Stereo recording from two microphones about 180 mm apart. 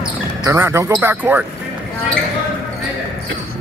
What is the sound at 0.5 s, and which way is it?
Speech, 15° right (ahead or behind).